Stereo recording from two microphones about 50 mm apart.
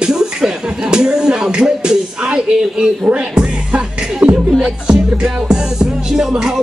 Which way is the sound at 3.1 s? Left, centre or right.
Right.